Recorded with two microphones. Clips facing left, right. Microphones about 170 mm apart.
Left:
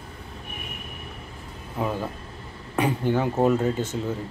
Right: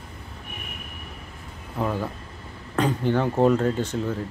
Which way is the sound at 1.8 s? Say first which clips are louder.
Right 1 dB; 5° left (ahead or behind).